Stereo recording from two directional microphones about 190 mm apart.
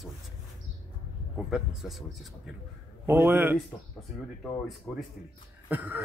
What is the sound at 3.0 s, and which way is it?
Speech, 10° right (ahead or behind).